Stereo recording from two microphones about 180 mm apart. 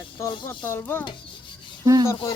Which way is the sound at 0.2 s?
15° left (ahead or behind).